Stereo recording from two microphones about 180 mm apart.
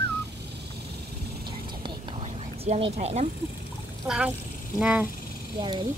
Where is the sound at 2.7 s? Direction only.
35° right (ahead or behind).